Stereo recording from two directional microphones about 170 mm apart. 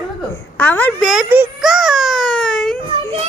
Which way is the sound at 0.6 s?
10° left (ahead or behind).